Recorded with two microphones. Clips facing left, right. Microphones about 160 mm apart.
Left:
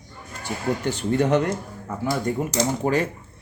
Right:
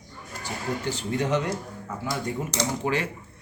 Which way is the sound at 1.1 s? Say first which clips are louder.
Left 6 dB; 55° left (ahead or behind).